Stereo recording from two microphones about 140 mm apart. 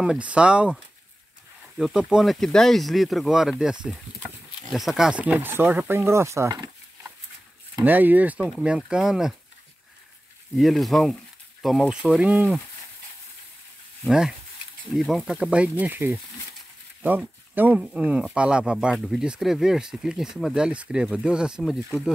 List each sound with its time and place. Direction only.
0.0 s speech: 10° right (ahead or behind)
1.8 s speech: 5° right (ahead or behind)
4.7 s speech: centre (ahead or behind); by 7.1 s 25° right (ahead or behind)
7.8 s speech: 15° right (ahead or behind)
10.5 s speech: centre (ahead or behind)
14.0 s speech: 5° right (ahead or behind)